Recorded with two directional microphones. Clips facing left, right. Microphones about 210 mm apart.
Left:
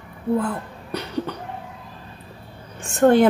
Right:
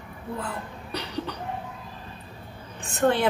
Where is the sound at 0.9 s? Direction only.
50° left (ahead or behind).